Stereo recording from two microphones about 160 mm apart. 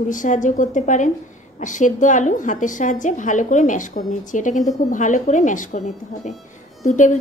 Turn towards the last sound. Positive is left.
turn(degrees=50)  # may be behind; listen again after turning